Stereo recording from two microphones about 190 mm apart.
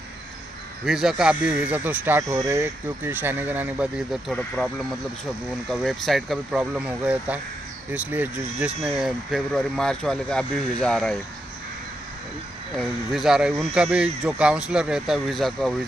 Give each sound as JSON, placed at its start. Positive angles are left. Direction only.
{"t": 0.8, "sound": "speech", "side_deg": 0}
{"t": 12.7, "sound": "speech", "side_deg": 0}